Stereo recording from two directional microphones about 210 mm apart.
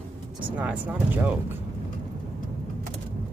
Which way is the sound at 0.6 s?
5° right (ahead or behind).